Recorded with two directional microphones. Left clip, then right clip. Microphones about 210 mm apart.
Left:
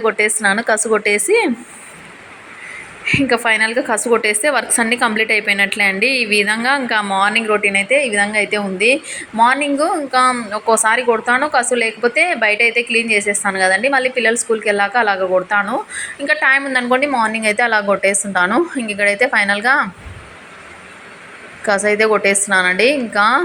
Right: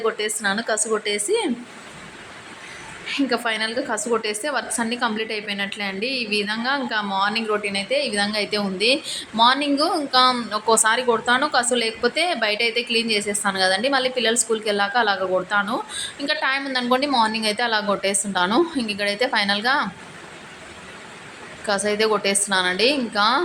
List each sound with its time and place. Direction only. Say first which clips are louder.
0.0 s a woman's voice: left 8 dB; 15° left (ahead or behind)
3.1 s a woman's voice: left 8 dB; 15° left (ahead or behind)
21.7 s a woman's voice: left 7 dB; 10° left (ahead or behind)